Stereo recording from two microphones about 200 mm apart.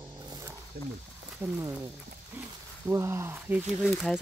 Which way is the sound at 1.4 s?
10° right (ahead or behind).